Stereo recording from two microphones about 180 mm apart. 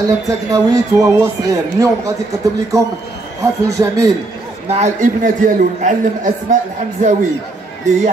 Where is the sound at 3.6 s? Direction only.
15° right (ahead or behind).